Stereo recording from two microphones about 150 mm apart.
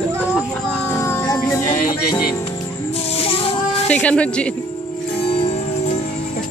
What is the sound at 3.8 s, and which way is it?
Speech, 10° left (ahead or behind).